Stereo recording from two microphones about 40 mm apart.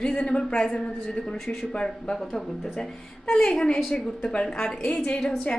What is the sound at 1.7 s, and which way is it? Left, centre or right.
Speech, centre.